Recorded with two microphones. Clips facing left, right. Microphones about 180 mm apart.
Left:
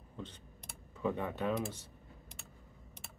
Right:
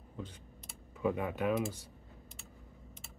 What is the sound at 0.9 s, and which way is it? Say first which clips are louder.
Speech: right 2 dB; 10° right (ahead or behind).